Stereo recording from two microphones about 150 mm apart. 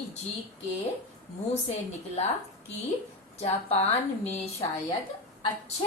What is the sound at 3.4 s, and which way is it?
Speech, 45° left (ahead or behind).